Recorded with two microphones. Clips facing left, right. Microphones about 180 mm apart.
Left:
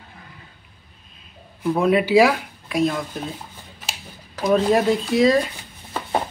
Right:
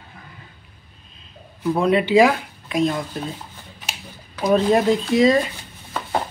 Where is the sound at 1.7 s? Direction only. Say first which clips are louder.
Even; 5° left (ahead or behind).